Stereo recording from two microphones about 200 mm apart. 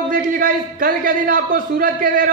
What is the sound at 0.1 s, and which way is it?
A man's voice, 45° right (ahead or behind).